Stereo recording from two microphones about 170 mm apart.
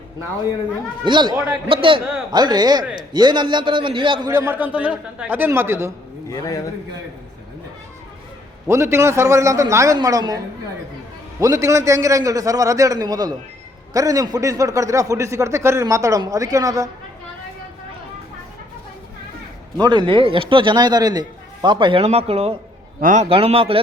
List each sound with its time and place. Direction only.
1.0 s a man's voice: 25° right (ahead or behind)
4.3 s a man's voice: 15° right (ahead or behind)
6.2 s a man's voice: 20° left (ahead or behind)
8.6 s a man's voice: 15° right (ahead or behind)
19.7 s a man's voice: 25° right (ahead or behind)
23.0 s speech: 50° right (ahead or behind)